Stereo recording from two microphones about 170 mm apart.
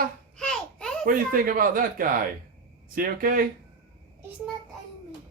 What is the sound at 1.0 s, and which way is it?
Speech, 55° right (ahead or behind).